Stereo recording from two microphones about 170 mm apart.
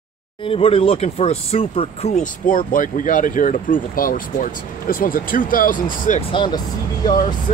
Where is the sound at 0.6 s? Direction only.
35° left (ahead or behind).